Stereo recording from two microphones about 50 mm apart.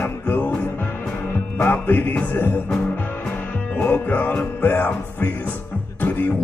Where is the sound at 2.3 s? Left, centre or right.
Left.